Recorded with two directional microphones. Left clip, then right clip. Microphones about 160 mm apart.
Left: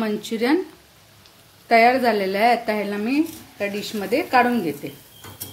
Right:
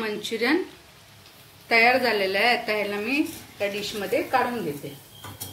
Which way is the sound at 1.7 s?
90° left.